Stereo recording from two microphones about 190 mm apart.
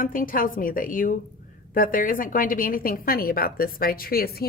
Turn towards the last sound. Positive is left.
turn(degrees=55)  # may be behind; listen again after turning